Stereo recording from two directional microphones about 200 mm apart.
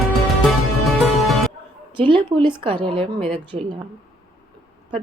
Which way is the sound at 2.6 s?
25° right (ahead or behind).